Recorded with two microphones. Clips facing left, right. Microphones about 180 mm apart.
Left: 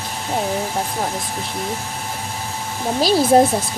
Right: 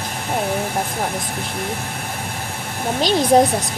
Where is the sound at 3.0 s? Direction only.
5° left (ahead or behind).